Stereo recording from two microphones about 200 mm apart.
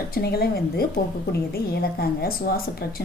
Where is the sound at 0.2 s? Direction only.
50° left (ahead or behind).